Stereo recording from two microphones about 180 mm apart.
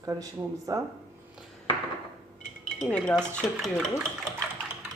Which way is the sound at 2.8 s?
5° left (ahead or behind).